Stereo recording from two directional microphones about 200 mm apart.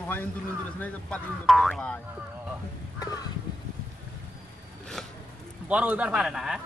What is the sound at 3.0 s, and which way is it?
Music, 20° left (ahead or behind).